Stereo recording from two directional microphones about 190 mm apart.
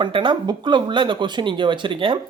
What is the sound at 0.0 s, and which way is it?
Speech, 25° right (ahead or behind).